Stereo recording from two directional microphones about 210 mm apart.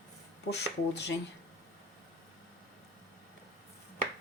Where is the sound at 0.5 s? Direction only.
55° left (ahead or behind).